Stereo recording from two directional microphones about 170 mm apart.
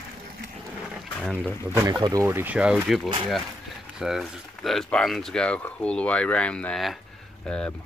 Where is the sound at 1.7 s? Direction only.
15° right (ahead or behind); by 7.7 s 5° left (ahead or behind).